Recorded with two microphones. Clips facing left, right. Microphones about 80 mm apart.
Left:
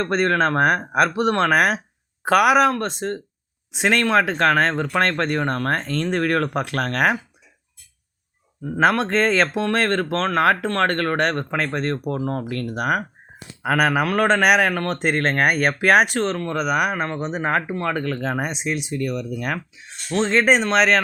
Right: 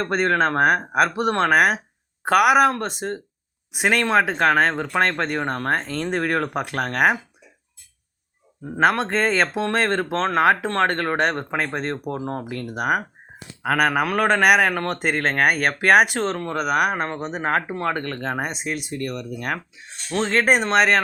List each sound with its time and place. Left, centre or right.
0.0 s speech: centre
8.8 s speech: centre
13.6 s speech: centre
17.7 s speech: centre
17.9 s speech: centre